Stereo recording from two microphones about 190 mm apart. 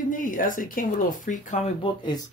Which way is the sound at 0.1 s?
45° left (ahead or behind).